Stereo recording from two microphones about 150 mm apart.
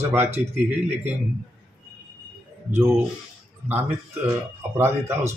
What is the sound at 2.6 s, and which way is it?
Speech, 15° right (ahead or behind).